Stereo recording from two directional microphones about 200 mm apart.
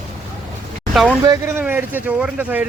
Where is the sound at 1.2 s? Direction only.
15° right (ahead or behind).